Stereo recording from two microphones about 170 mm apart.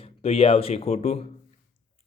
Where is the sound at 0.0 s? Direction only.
35° left (ahead or behind).